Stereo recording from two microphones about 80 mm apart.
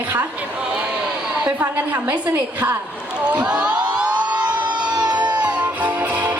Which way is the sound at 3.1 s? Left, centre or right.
Centre.